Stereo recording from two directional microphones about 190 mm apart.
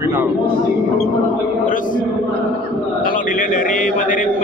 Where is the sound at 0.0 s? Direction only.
15° right (ahead or behind).